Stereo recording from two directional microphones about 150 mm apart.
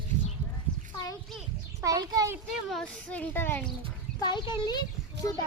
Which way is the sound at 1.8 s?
25° right (ahead or behind).